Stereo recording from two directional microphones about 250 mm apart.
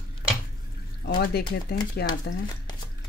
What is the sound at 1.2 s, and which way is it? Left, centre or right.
Speech, left.